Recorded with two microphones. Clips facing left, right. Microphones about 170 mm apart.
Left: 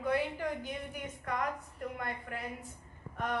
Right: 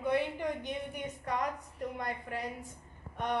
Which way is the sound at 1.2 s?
30° right (ahead or behind).